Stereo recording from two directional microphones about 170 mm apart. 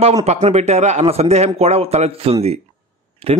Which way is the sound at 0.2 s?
40° right (ahead or behind).